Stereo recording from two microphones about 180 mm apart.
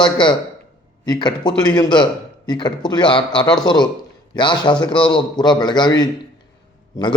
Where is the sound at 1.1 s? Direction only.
25° left (ahead or behind).